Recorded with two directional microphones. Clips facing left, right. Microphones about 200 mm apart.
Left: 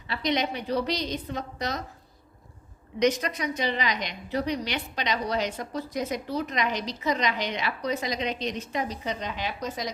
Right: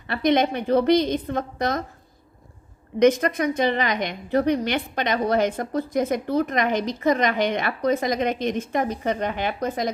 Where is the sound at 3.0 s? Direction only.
50° right (ahead or behind).